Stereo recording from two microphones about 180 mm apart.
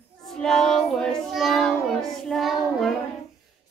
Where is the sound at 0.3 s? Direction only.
Centre (ahead or behind).